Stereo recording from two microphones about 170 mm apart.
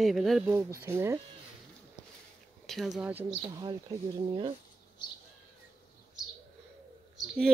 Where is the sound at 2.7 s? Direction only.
Centre (ahead or behind).